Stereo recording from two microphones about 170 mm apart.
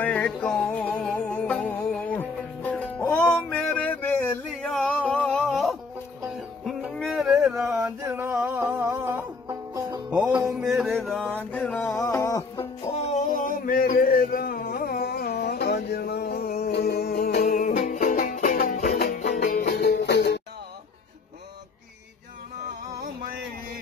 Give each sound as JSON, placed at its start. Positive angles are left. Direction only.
{"t": 0.0, "sound": "music", "side_deg": 5}
{"t": 5.4, "sound": "a sound", "side_deg": 0}
{"t": 6.2, "sound": "music", "side_deg": -5}
{"t": 8.2, "sound": "music", "side_deg": -15}
{"t": 10.7, "sound": "music", "side_deg": 0}
{"t": 12.0, "sound": "music", "side_deg": 20}
{"t": 13.0, "sound": "a sound", "side_deg": 45}
{"t": 17.5, "sound": "music", "side_deg": 45}
{"t": 18.9, "sound": "music", "side_deg": 55}
{"t": 19.8, "sound": "music", "side_deg": 80}